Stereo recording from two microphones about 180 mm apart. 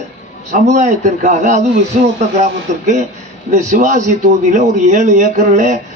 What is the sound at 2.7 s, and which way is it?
A man's voice, 40° right (ahead or behind).